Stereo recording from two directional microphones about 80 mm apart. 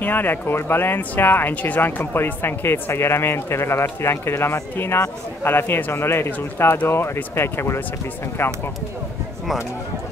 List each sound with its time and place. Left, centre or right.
0.0 s speech: left